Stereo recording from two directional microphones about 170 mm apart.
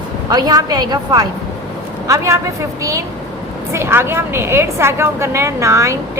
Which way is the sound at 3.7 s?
15° right (ahead or behind).